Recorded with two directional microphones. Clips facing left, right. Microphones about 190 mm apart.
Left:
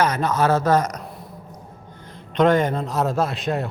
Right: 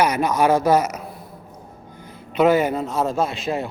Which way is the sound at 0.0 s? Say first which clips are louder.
Right 2 dB; 10° right (ahead or behind).